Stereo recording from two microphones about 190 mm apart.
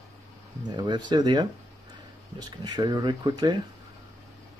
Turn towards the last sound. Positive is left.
turn(degrees=-20)  # may be behind; listen again after turning